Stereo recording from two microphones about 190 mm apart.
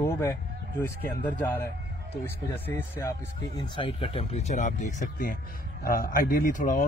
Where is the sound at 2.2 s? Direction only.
10° left (ahead or behind).